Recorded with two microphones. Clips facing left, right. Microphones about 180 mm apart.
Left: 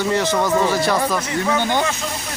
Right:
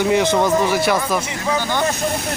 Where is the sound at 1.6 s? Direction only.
15° left (ahead or behind).